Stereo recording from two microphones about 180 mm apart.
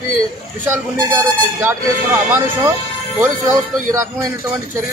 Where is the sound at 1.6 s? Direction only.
10° right (ahead or behind).